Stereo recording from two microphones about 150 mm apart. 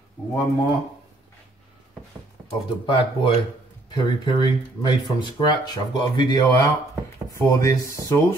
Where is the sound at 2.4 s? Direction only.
35° left (ahead or behind).